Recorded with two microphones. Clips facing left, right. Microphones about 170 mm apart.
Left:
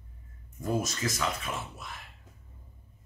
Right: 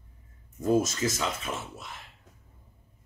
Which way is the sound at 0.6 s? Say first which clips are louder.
Right 6 dB; 25° right (ahead or behind).